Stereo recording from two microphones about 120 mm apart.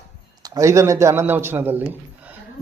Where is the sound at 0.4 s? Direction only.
30° right (ahead or behind).